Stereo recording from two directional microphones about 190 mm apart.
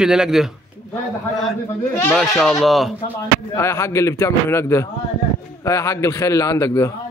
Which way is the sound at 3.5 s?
15° left (ahead or behind).